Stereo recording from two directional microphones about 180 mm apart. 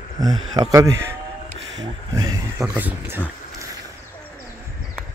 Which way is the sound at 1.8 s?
20° right (ahead or behind).